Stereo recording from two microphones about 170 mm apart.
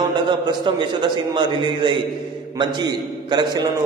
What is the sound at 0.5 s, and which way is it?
Speech, 25° right (ahead or behind).